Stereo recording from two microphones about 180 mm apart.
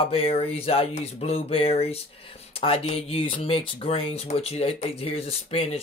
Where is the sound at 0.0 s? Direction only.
30° left (ahead or behind).